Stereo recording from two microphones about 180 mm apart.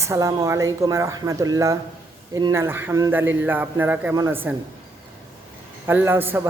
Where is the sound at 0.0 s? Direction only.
15° right (ahead or behind).